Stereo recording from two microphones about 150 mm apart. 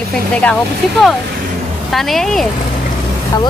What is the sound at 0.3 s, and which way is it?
Speech, 5° left (ahead or behind).